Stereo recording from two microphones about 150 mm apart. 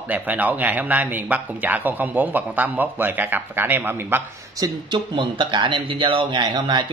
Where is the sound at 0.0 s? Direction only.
10° right (ahead or behind).